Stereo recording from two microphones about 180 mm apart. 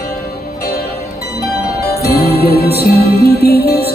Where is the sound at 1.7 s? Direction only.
60° left (ahead or behind).